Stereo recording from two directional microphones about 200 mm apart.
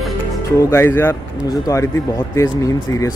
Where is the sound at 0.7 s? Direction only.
10° left (ahead or behind).